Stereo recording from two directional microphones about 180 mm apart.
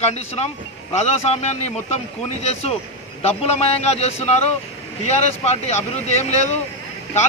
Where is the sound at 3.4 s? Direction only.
35° left (ahead or behind).